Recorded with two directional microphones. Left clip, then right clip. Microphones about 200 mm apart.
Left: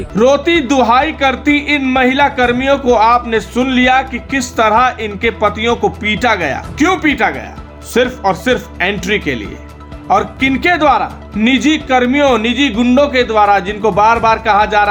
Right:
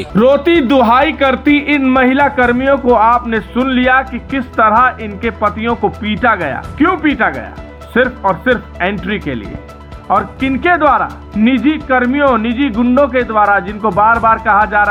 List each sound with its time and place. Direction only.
0.2 s a man's voice: 25° right (ahead or behind)